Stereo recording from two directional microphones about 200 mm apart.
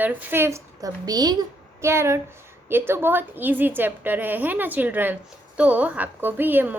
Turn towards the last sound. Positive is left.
turn(degrees=-10)  # may be behind; listen again after turning